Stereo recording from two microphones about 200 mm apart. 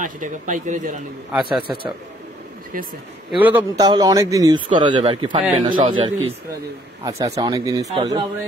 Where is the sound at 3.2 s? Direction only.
10° right (ahead or behind).